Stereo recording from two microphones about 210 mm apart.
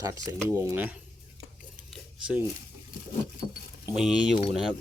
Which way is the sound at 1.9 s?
5° right (ahead or behind).